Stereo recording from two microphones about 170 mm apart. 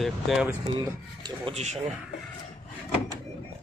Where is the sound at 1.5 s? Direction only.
40° right (ahead or behind).